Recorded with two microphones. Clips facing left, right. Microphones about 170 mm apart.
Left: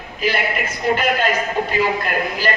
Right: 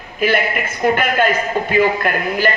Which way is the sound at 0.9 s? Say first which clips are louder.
Even; 55° right (ahead or behind).